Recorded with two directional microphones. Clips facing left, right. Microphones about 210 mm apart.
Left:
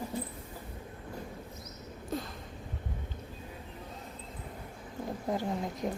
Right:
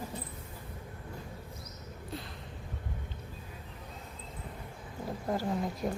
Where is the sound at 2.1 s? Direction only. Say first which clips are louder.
Left 6 dB; 45° left (ahead or behind).